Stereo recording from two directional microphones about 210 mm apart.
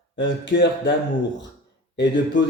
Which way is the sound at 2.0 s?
55° left (ahead or behind).